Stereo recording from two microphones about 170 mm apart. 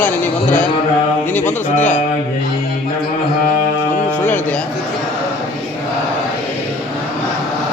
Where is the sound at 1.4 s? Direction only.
45° left (ahead or behind).